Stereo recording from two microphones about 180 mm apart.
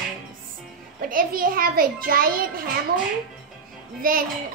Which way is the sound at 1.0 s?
50° right (ahead or behind).